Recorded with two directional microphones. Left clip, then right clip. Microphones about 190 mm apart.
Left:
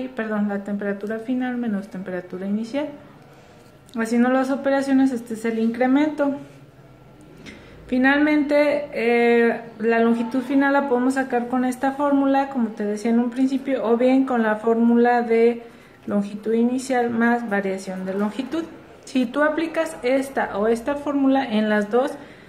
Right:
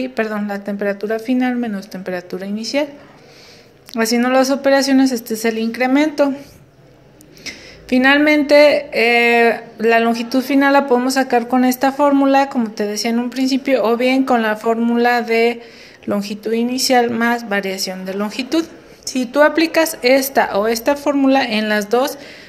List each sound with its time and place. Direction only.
0.0 s a woman's voice: 25° right (ahead or behind)
3.9 s a woman's voice: 25° right (ahead or behind)
7.4 s a woman's voice: 30° right (ahead or behind)